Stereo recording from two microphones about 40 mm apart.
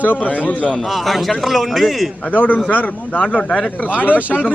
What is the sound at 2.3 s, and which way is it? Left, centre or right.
A man's voice, left.